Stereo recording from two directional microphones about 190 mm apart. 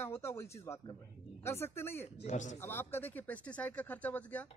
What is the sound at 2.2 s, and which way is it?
Speech, 40° left (ahead or behind).